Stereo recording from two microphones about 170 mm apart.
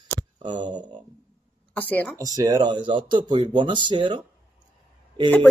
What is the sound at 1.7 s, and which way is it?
Speech, 10° left (ahead or behind).